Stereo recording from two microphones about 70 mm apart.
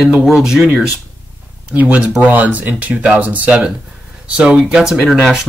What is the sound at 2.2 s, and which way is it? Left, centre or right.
Speech, right.